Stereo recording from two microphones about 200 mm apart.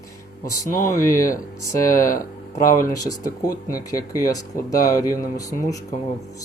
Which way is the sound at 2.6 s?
15° left (ahead or behind).